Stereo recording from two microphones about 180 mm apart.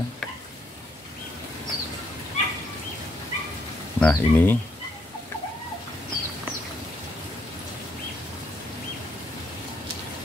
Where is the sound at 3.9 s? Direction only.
10° left (ahead or behind).